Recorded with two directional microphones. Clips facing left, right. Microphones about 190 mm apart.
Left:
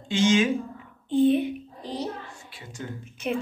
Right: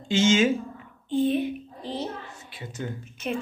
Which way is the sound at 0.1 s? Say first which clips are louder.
Right 1 dB; 25° right (ahead or behind).